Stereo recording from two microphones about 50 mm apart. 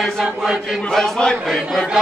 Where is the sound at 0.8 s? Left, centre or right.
Centre.